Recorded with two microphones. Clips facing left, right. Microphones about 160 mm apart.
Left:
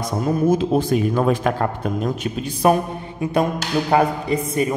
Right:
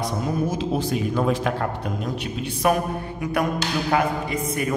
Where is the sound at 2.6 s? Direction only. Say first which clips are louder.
Left 4 dB; 30° left (ahead or behind).